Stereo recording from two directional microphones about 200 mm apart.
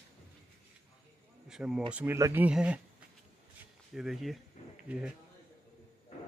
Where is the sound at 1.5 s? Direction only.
5° right (ahead or behind).